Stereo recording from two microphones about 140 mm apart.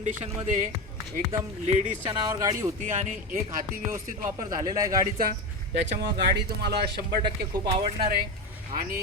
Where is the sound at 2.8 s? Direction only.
65° right (ahead or behind).